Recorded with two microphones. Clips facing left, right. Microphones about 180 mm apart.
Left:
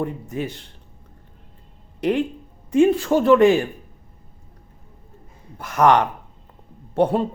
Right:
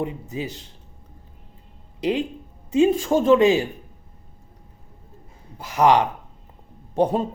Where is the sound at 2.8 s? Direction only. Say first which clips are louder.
Left 1 dB; 15° right (ahead or behind).